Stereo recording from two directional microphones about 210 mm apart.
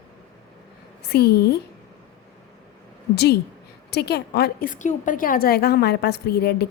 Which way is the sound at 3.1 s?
50° left (ahead or behind).